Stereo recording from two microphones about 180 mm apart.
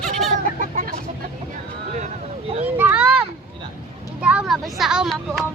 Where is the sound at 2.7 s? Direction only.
10° right (ahead or behind).